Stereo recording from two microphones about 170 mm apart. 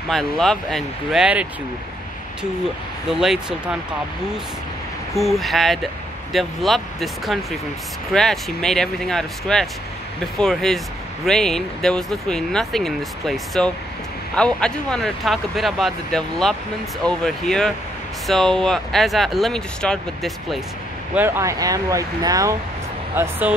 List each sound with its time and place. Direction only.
0.1 s speech: centre (ahead or behind)
3.1 s speech: 5° right (ahead or behind)
5.1 s speech: centre (ahead or behind)
21.1 s speech: 15° right (ahead or behind)